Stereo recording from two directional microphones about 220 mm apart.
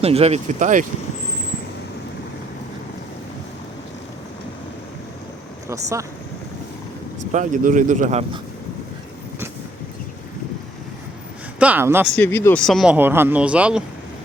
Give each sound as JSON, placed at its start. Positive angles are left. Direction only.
{"t": 0.0, "sound": "speech", "side_deg": -30}
{"t": 5.6, "sound": "speech", "side_deg": -15}
{"t": 7.3, "sound": "speech", "side_deg": -35}
{"t": 11.6, "sound": "speech", "side_deg": -10}
{"t": 12.1, "sound": "speech", "side_deg": 10}